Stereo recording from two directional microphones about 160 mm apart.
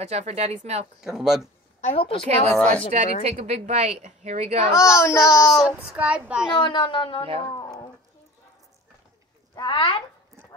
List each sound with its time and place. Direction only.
0.0 s speech: 45° right (ahead or behind)
1.0 s speech: 5° right (ahead or behind)
1.8 s a woman's voice: 40° left (ahead or behind)
2.2 s speech: 45° right (ahead or behind)
2.5 s speech: 5° left (ahead or behind)
2.9 s a woman's voice: 45° right (ahead or behind)
4.9 s speech: 15° left (ahead or behind)
5.9 s a woman's voice: 5° right (ahead or behind)
6.5 s a woman's voice: 30° left (ahead or behind)
7.5 s a sound: 25° left (ahead or behind)
9.6 s speech: 30° left (ahead or behind)